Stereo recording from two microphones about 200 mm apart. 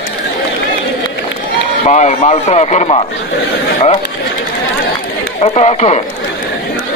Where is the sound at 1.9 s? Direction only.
35° left (ahead or behind).